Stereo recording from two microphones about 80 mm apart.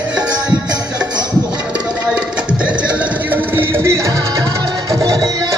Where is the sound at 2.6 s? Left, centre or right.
Centre.